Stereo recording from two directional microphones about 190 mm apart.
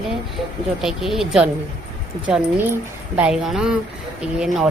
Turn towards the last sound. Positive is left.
turn(degrees=-5)  # may be behind; listen again after turning